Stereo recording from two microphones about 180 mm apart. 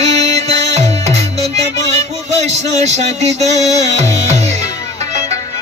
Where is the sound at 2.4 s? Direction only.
40° right (ahead or behind).